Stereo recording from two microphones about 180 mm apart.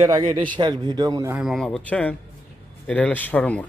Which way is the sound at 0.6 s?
25° right (ahead or behind).